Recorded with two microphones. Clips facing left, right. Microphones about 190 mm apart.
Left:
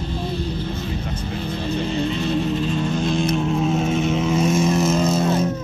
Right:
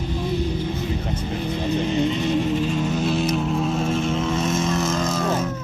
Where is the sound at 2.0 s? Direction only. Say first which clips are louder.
Even; 15° right (ahead or behind); by 5.5 s 25° left (ahead or behind).